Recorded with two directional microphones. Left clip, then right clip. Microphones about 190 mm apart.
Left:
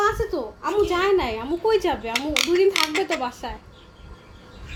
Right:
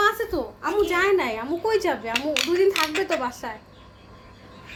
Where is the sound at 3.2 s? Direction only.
Centre (ahead or behind).